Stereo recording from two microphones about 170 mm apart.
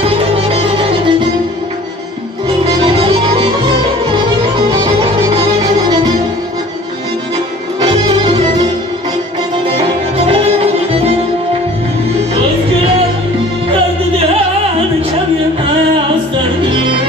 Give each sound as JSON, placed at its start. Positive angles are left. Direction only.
{"t": 0.0, "sound": "music", "side_deg": -35}
{"t": 2.8, "sound": "music", "side_deg": -30}
{"t": 8.3, "sound": "music", "side_deg": -40}
{"t": 9.7, "sound": "music", "side_deg": -35}